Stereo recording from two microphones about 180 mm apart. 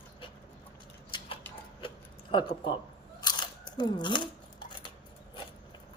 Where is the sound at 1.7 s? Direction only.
30° left (ahead or behind).